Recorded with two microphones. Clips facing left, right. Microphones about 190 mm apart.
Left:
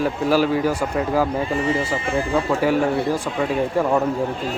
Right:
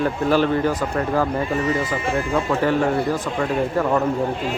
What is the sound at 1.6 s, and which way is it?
Speech, 30° left (ahead or behind).